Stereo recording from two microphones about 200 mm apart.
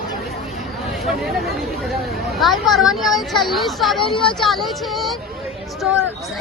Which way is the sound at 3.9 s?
25° left (ahead or behind).